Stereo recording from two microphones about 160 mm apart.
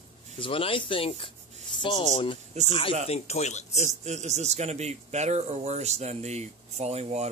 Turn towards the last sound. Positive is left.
turn(degrees=-40)  # may be behind; listen again after turning